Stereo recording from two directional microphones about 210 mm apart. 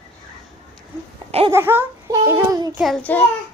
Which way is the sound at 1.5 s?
10° right (ahead or behind).